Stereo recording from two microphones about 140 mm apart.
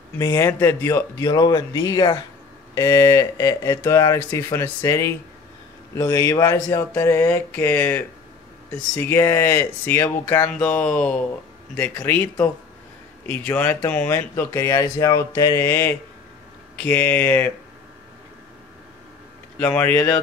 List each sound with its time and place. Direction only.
0.2 s speech: 20° left (ahead or behind)
1.2 s speech: 30° left (ahead or behind)
19.6 s speech: 15° left (ahead or behind)